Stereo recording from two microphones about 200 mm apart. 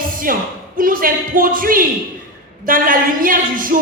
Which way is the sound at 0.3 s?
45° right (ahead or behind).